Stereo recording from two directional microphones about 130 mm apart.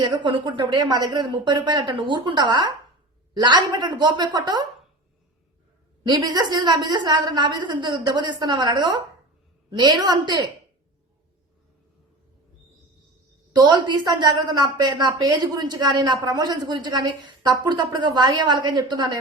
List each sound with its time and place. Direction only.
0.0 s a woman's voice: 35° right (ahead or behind)
6.0 s a woman's voice: 30° right (ahead or behind)
13.5 s a woman's voice: 35° right (ahead or behind)